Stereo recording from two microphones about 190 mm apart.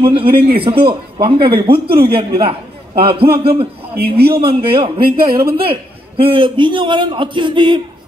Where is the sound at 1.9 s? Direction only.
55° right (ahead or behind).